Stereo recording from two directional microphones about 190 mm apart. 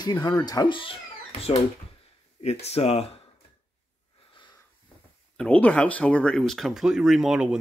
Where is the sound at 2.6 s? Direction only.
35° left (ahead or behind).